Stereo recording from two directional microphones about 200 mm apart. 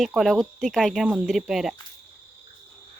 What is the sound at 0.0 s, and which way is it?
Speech, centre (ahead or behind).